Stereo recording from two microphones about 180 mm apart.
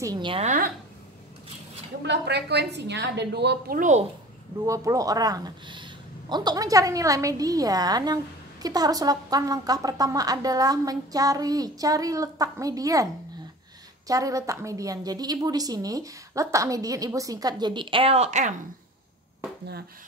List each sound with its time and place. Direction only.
0.0 s a woman's voice: 25° right (ahead or behind)
2.0 s a woman's voice: 70° right (ahead or behind); by 4.0 s 50° right (ahead or behind)
4.6 s a woman's voice: 20° right (ahead or behind); by 18.5 s 40° right (ahead or behind)